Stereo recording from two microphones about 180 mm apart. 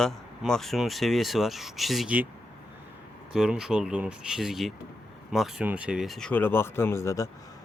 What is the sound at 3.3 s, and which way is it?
Speech, 5° right (ahead or behind).